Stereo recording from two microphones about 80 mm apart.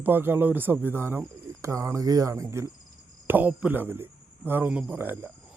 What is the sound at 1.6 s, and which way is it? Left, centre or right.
A man's voice, right.